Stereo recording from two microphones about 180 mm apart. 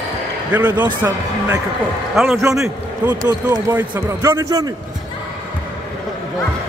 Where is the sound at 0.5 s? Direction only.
10° right (ahead or behind).